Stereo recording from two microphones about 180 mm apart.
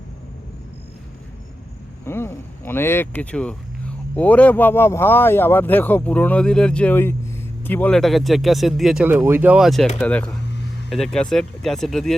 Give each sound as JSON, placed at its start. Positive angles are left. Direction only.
{"t": 2.0, "sound": "speech", "side_deg": 15}